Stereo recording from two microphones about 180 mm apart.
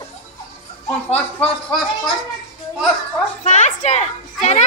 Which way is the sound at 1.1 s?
5° left (ahead or behind).